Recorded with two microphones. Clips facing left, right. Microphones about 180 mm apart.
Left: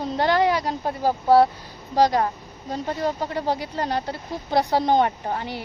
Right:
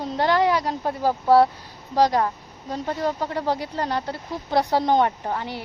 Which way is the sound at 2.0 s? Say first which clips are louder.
Even; 15° left (ahead or behind).